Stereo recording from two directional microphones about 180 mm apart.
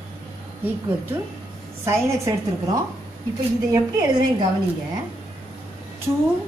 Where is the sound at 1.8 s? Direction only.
15° right (ahead or behind).